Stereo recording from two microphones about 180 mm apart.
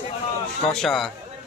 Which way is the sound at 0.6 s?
Centre (ahead or behind).